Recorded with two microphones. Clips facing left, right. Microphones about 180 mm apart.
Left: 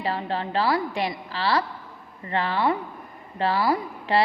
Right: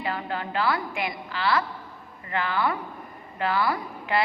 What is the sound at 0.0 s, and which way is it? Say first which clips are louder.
A woman's voice: left 3 dB; 30° left (ahead or behind).